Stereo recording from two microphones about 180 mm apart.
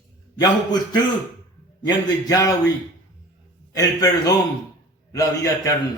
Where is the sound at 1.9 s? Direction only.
20° left (ahead or behind).